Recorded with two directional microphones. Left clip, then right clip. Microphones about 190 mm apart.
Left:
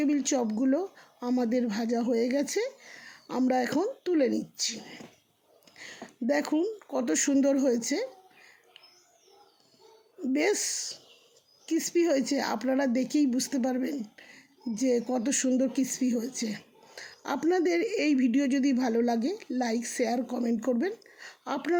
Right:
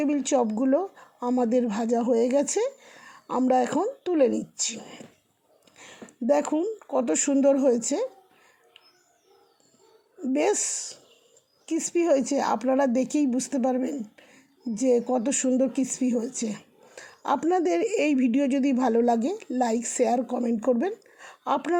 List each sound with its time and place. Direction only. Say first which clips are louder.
0.0 s speech: right 4 dB; 15° right (ahead or behind)
10.2 s speech: right 3 dB; 15° right (ahead or behind)